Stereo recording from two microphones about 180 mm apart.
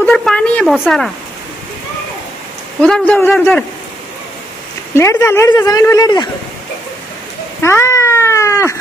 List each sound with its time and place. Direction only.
0.0 s a sound: 5° left (ahead or behind)
0.8 s speech: centre (ahead or behind)
2.8 s a man's voice: 5° left (ahead or behind)
4.9 s a man's voice: 15° left (ahead or behind)
7.6 s cat: 15° left (ahead or behind)